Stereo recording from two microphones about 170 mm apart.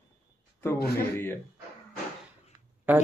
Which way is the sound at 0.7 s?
70° left (ahead or behind).